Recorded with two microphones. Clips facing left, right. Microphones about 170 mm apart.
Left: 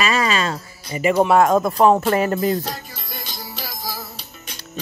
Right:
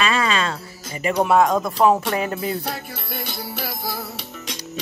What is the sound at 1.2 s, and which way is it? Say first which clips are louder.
Speech: left 1 dB; centre (ahead or behind).